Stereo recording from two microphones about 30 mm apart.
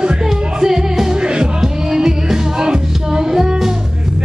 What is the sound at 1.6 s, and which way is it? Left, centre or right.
Music, centre.